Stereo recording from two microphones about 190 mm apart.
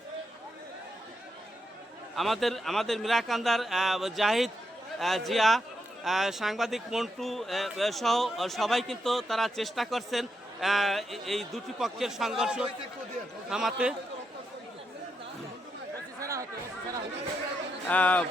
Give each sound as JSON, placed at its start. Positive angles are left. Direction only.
{"t": 2.1, "sound": "speech", "side_deg": 0}
{"t": 16.2, "sound": "chatter", "side_deg": -15}
{"t": 17.8, "sound": "speech", "side_deg": 10}